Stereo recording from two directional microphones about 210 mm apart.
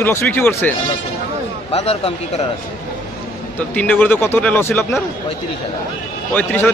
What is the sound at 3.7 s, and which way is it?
Speech, 5° left (ahead or behind).